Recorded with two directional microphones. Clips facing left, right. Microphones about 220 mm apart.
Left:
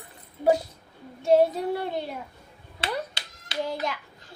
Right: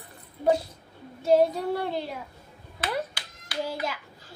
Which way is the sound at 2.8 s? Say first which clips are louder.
Right 1 dB; 25° left (ahead or behind).